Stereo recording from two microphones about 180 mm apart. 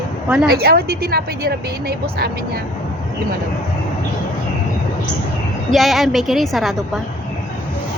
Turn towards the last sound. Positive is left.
turn(degrees=0)  # may be behind; listen again after turning